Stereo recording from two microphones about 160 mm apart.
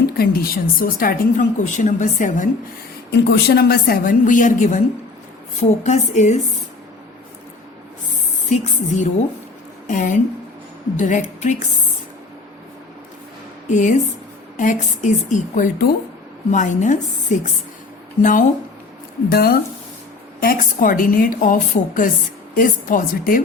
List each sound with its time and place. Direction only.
0.2 s a woman's voice: 65° left (ahead or behind)
3.2 s a woman's voice: 75° left (ahead or behind); by 6.4 s 45° left (ahead or behind)
8.4 s a woman's voice: 50° left (ahead or behind)
13.7 s a woman's voice: 50° left (ahead or behind)
19.3 s speech: 70° left (ahead or behind)
20.4 s a woman's voice: 60° left (ahead or behind)